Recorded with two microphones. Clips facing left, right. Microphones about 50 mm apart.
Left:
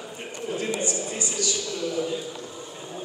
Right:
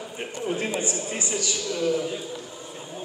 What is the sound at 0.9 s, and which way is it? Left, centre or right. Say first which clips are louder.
Speech: right 1 dB; right.